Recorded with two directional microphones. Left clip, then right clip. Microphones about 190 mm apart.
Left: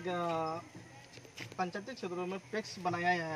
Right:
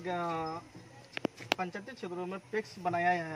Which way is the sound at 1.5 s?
10° right (ahead or behind).